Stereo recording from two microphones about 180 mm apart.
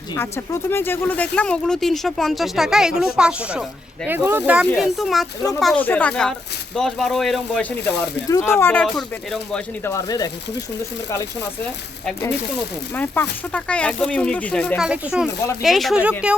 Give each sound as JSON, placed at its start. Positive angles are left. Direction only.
{"t": 0.2, "sound": "speech", "side_deg": 10}
{"t": 4.6, "sound": "speech", "side_deg": 0}
{"t": 9.8, "sound": "speech", "side_deg": 20}
{"t": 13.0, "sound": "speech", "side_deg": 10}